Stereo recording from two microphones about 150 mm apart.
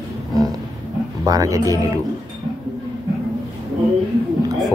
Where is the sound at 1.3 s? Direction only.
25° right (ahead or behind).